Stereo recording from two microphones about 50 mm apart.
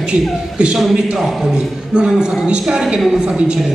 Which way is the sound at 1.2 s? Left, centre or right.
Centre.